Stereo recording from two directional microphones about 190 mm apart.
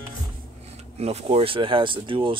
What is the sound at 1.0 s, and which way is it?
Speech, 30° right (ahead or behind).